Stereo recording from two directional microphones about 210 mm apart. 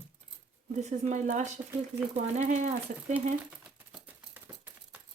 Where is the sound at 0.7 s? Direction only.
35° right (ahead or behind).